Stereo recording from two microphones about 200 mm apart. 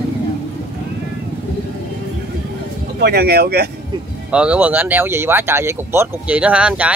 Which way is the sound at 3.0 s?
50° right (ahead or behind).